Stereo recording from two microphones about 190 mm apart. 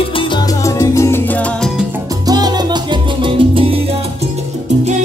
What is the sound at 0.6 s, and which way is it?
Salsa music, 15° left (ahead or behind).